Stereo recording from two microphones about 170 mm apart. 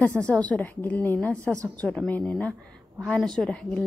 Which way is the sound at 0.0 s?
10° left (ahead or behind).